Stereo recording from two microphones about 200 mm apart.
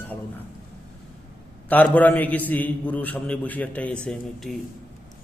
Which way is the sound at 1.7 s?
10° left (ahead or behind).